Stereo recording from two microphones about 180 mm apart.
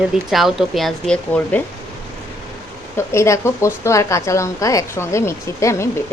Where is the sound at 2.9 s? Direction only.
15° left (ahead or behind).